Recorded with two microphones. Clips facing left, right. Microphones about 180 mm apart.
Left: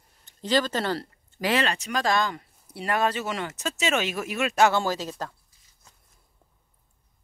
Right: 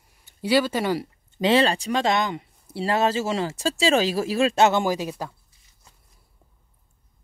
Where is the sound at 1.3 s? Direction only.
25° right (ahead or behind).